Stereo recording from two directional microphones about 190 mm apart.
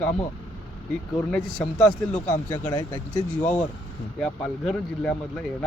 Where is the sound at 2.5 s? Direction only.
15° left (ahead or behind).